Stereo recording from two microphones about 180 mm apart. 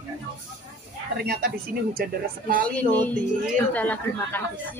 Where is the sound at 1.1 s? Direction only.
60° right (ahead or behind).